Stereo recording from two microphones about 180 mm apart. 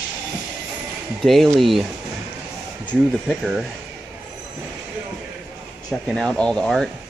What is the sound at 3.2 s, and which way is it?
Speech, centre (ahead or behind).